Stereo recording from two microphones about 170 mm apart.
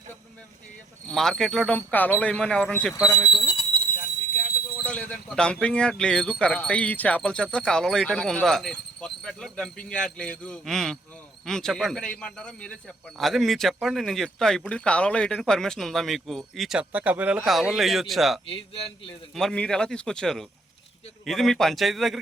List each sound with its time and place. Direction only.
1.1 s speech: centre (ahead or behind)
3.0 s speech: 5° right (ahead or behind)
3.3 s a sound: 25° left (ahead or behind)
4.9 s speech: 5° left (ahead or behind)
18.4 s a man's voice: 35° left (ahead or behind)
19.3 s speech: 5° left (ahead or behind)